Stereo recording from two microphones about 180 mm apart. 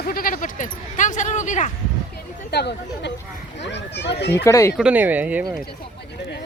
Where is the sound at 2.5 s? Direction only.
65° left (ahead or behind).